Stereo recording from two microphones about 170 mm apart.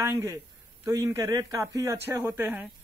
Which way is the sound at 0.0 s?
15° right (ahead or behind).